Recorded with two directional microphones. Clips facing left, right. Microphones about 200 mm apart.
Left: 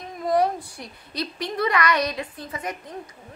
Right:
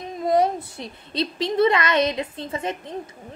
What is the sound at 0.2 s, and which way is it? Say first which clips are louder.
A woman's voice: right 2 dB; 25° right (ahead or behind).